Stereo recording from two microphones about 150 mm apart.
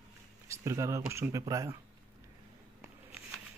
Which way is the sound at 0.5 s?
20° right (ahead or behind).